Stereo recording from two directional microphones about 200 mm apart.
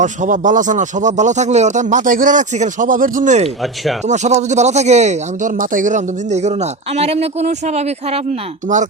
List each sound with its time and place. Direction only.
0.0 s speech: 40° right (ahead or behind)